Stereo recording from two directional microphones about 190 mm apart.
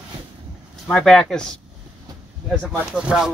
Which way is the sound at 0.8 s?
5° left (ahead or behind).